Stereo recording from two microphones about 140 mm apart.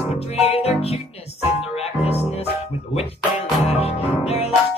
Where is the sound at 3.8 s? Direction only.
45° left (ahead or behind).